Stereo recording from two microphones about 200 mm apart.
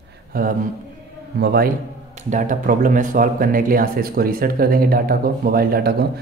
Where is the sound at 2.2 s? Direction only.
40° right (ahead or behind).